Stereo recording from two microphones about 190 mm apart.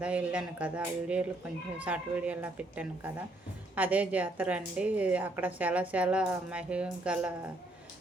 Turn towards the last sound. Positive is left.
turn(degrees=-5)  # may be behind; listen again after turning